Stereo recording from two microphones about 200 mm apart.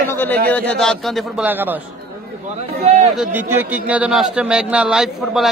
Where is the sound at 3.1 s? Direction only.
5° right (ahead or behind).